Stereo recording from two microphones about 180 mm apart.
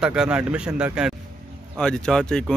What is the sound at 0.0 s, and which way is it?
Speech, 5° right (ahead or behind).